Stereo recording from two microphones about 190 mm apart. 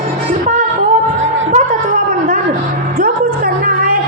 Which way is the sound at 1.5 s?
40° right (ahead or behind).